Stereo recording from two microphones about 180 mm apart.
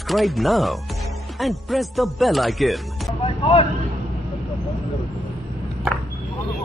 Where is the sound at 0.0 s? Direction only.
Centre (ahead or behind).